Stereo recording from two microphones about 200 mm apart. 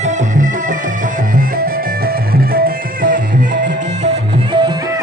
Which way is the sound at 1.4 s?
50° right (ahead or behind).